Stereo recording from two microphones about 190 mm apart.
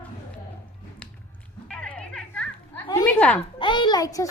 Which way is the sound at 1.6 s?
5° left (ahead or behind).